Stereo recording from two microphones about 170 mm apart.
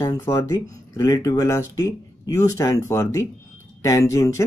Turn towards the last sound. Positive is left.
turn(degrees=15)  # may be behind; listen again after turning